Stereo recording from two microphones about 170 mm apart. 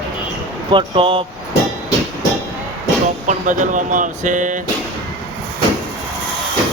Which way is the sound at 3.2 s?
50° right (ahead or behind).